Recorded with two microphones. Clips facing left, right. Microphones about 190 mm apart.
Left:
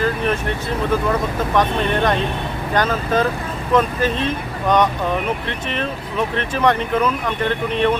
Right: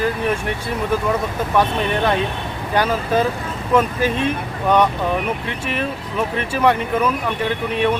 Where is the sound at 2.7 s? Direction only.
10° right (ahead or behind).